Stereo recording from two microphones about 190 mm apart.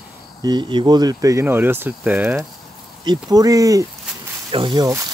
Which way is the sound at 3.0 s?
20° right (ahead or behind).